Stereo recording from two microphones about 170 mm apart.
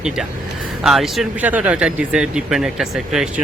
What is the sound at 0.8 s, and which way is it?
Speech, centre (ahead or behind).